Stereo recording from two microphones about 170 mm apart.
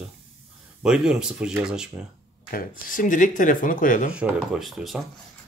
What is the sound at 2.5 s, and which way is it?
Speech, 55° left (ahead or behind).